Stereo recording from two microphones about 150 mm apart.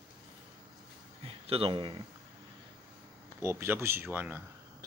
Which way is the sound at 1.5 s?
40° right (ahead or behind).